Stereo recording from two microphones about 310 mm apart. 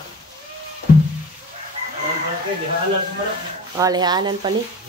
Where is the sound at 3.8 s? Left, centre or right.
Centre.